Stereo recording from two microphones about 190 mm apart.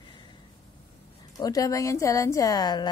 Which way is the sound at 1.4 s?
20° left (ahead or behind).